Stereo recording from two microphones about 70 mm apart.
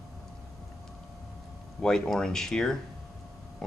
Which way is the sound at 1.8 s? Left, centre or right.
Centre.